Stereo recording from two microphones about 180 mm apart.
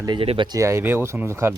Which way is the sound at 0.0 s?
30° right (ahead or behind).